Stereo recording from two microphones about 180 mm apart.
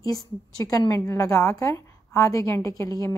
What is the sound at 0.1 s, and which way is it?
A woman's voice, 20° left (ahead or behind).